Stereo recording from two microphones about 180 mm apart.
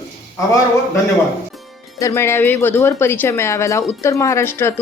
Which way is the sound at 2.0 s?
15° left (ahead or behind).